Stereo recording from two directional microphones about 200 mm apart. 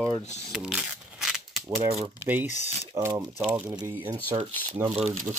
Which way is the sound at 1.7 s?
30° right (ahead or behind).